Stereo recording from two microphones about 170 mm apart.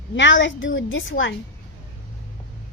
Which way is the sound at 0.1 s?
90° left.